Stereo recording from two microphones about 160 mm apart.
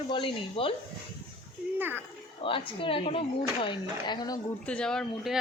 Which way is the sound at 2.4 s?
35° left (ahead or behind).